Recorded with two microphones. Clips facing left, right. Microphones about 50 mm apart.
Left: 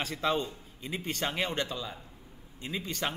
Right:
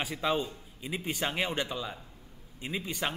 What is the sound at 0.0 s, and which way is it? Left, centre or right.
A man's voice, centre.